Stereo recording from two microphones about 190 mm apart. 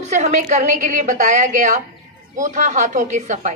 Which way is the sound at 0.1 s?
40° right (ahead or behind).